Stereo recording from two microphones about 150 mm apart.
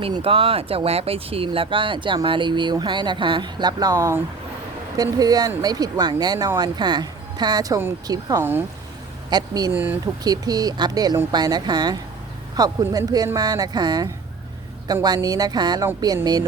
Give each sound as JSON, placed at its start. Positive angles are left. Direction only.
{"t": 0.2, "sound": "speech", "side_deg": -40}
{"t": 9.7, "sound": "speech", "side_deg": -10}
{"t": 10.2, "sound": "speech", "side_deg": -25}